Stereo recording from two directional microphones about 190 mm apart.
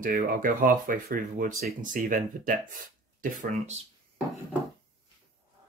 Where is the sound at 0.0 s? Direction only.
45° right (ahead or behind).